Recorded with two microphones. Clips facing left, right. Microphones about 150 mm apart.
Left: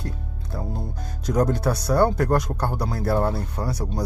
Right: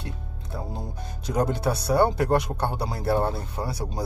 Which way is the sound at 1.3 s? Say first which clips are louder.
Left 3 dB; 10° right (ahead or behind).